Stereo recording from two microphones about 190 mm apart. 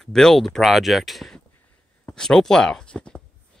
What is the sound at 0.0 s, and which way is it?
Speech, 5° left (ahead or behind).